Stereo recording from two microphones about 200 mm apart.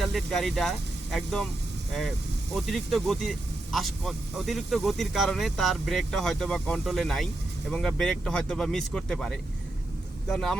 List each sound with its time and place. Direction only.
0.0 s speech: centre (ahead or behind)